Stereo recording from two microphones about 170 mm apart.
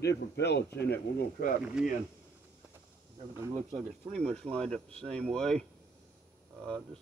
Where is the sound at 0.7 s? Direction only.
70° left (ahead or behind).